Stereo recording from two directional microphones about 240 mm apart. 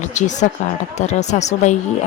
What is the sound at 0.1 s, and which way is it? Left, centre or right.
A woman's voice, left.